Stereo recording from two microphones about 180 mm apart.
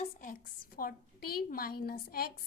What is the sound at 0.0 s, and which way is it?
A woman's voice, 45° left (ahead or behind).